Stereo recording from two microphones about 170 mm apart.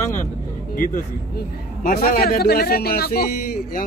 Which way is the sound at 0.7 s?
55° left (ahead or behind).